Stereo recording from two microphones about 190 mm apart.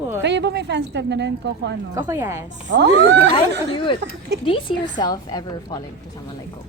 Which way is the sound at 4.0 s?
60° right (ahead or behind).